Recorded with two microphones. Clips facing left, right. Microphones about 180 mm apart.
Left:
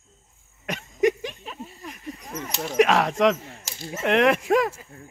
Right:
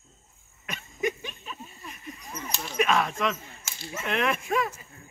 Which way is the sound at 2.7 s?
80° left.